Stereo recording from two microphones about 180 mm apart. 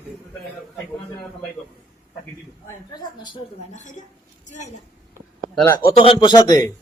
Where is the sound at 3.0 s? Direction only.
25° left (ahead or behind).